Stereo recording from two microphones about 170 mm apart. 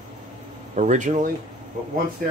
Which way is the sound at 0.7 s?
45° right (ahead or behind).